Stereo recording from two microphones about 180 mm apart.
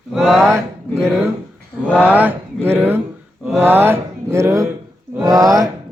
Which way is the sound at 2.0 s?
10° right (ahead or behind).